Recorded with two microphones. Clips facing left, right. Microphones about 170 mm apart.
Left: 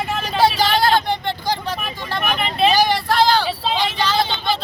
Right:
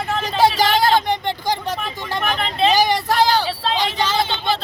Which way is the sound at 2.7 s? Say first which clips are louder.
Even; 15° right (ahead or behind).